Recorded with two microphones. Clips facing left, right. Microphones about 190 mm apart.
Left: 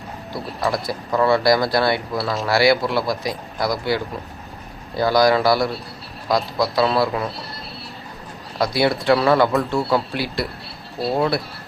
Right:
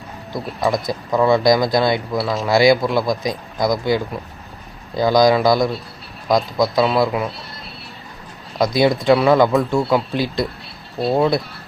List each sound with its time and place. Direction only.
0.3 s a man's voice: 20° right (ahead or behind)
2.1 s speech: centre (ahead or behind)
2.5 s a man's voice: 15° right (ahead or behind)
8.5 s a man's voice: 15° right (ahead or behind)